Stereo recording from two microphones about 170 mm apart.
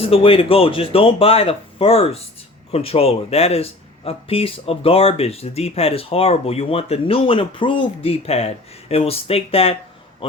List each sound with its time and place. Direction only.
0.0 s speech: 35° left (ahead or behind)